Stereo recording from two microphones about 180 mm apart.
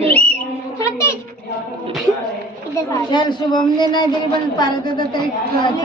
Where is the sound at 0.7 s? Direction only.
15° left (ahead or behind).